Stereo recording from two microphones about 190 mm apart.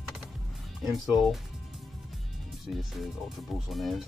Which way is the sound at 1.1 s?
Centre (ahead or behind).